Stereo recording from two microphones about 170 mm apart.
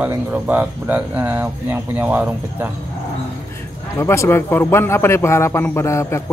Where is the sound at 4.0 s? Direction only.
15° left (ahead or behind).